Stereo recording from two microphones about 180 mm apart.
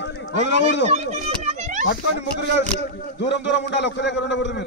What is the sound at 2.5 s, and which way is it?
A man's voice, 75° left (ahead or behind).